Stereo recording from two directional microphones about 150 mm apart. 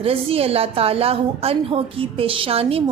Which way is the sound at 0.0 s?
40° right (ahead or behind).